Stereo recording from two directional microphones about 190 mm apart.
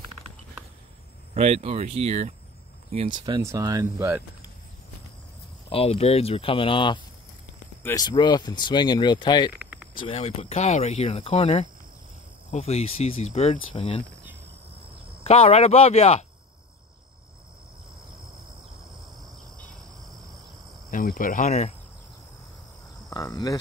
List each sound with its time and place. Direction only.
1.3 s speech: 35° right (ahead or behind)
3.3 s speech: 20° right (ahead or behind)
5.7 s speech: 30° left (ahead or behind)
15.2 s speech: 35° left (ahead or behind)
20.9 s cricket: 45° left (ahead or behind)
23.0 s speech: 20° left (ahead or behind)